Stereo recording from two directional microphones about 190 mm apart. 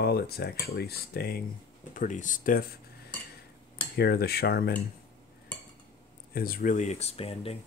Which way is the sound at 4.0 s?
55° left (ahead or behind).